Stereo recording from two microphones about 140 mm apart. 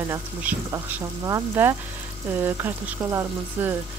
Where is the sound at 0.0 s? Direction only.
15° right (ahead or behind).